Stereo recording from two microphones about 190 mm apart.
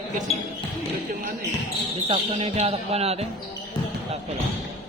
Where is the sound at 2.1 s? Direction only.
30° right (ahead or behind).